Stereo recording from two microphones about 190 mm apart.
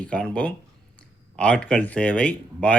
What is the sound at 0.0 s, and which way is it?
Speech, 5° left (ahead or behind).